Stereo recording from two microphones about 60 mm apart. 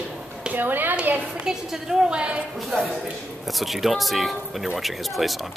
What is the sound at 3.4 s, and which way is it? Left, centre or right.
Speech, centre.